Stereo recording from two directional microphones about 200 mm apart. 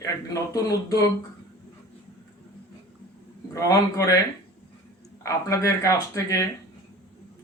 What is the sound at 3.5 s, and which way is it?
Speech, 15° left (ahead or behind).